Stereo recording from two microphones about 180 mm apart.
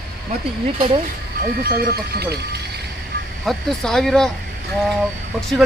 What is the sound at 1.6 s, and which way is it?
Speech, 55° right (ahead or behind).